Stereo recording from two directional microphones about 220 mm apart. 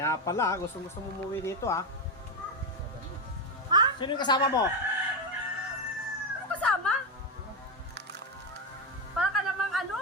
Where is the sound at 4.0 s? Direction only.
20° left (ahead or behind).